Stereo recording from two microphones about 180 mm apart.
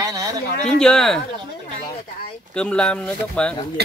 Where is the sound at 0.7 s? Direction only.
5° left (ahead or behind).